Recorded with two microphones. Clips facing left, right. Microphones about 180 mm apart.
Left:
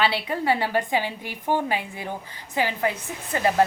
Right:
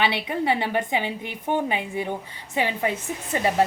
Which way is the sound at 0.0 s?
20° right (ahead or behind).